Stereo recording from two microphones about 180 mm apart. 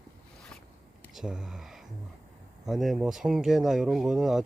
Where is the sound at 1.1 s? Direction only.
5° right (ahead or behind).